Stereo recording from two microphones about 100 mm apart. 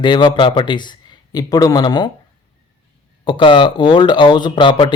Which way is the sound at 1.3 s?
40° left (ahead or behind).